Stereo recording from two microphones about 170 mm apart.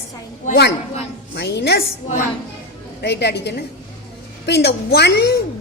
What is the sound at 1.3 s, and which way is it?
Music, 80° left.